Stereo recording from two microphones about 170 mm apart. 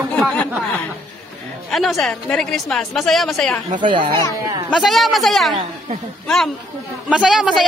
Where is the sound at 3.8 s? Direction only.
30° right (ahead or behind).